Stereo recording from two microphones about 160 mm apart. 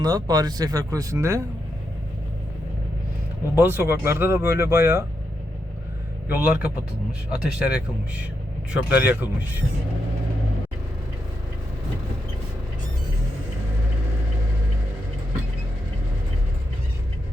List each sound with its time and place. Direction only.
0.0 s speech: 25° right (ahead or behind)
3.6 s speech: 15° right (ahead or behind)
6.2 s speech: 10° right (ahead or behind)